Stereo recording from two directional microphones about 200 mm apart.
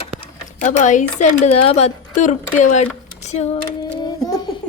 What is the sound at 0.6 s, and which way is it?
A woman's voice, 40° left (ahead or behind).